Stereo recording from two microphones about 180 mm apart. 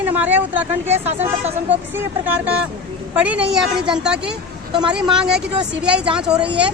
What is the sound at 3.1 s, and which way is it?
Speech, 10° right (ahead or behind).